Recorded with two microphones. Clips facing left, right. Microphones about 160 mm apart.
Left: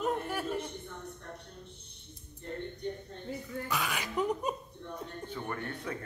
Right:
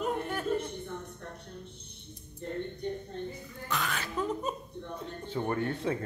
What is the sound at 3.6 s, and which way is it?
Laughter, 10° left (ahead or behind).